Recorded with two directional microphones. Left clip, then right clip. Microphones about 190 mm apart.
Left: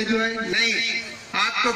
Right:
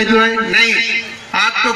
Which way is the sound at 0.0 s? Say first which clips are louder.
Right 11 dB; 40° right (ahead or behind).